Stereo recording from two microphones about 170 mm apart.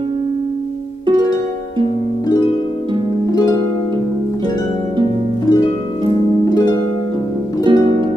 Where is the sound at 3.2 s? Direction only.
25° left (ahead or behind).